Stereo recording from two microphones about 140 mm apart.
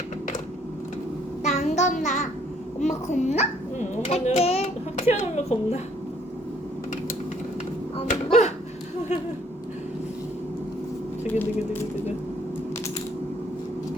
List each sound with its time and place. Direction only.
1.5 s child singing: 55° left (ahead or behind)
2.8 s a child's voice: 55° left (ahead or behind)
7.9 s music: 50° left (ahead or behind)
11.3 s speech: 10° left (ahead or behind)